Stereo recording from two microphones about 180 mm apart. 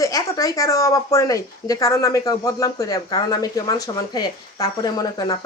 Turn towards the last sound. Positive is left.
turn(degrees=20)  # may be behind; listen again after turning